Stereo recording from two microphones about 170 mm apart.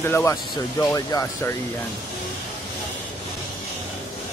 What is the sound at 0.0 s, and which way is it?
Speech, 15° left (ahead or behind).